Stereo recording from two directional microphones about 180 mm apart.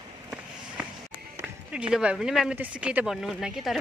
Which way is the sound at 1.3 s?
5° right (ahead or behind).